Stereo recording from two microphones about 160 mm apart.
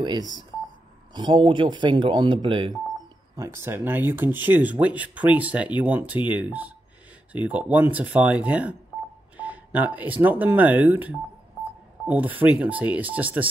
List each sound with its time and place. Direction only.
0.0 s speech: 25° right (ahead or behind)
3.3 s speech: 15° right (ahead or behind)